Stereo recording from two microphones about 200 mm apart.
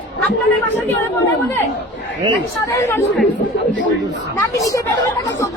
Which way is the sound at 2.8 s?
10° left (ahead or behind).